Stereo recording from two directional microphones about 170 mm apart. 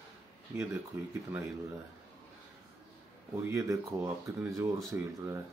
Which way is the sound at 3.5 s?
15° right (ahead or behind).